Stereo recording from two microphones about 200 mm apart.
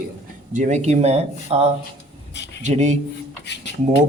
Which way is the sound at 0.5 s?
35° right (ahead or behind).